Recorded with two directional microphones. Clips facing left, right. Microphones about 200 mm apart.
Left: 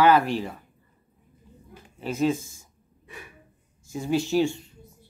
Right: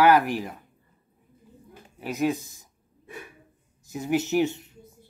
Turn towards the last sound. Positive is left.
turn(degrees=-20)  # may be behind; listen again after turning